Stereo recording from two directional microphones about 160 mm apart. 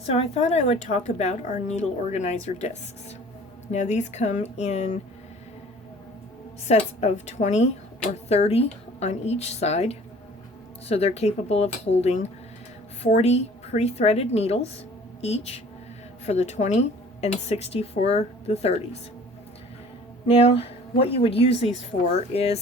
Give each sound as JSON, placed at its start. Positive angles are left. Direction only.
{"t": 0.0, "sound": "speech", "side_deg": 40}
{"t": 6.7, "sound": "a woman's voice", "side_deg": 40}
{"t": 20.2, "sound": "a woman's voice", "side_deg": 35}